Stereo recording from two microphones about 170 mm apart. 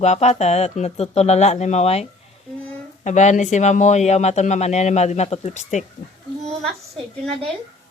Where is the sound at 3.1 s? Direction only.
45° left (ahead or behind).